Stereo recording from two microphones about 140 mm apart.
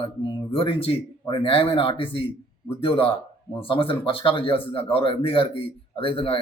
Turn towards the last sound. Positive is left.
turn(degrees=40)  # may be behind; listen again after turning